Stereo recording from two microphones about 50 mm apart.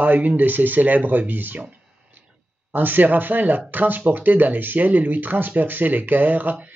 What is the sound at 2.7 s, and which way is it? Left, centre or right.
Speech, right.